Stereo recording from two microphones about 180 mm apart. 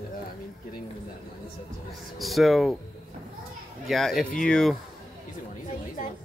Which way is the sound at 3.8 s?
Centre (ahead or behind).